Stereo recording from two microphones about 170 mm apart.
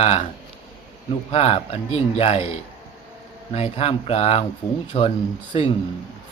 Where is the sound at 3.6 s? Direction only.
40° left (ahead or behind).